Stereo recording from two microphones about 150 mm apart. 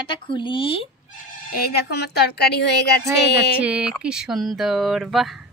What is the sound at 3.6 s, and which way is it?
Speech, 10° right (ahead or behind).